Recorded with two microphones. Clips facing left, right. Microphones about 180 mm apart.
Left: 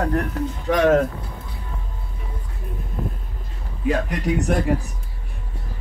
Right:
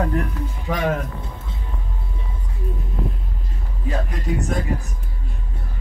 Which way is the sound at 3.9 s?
70° left (ahead or behind).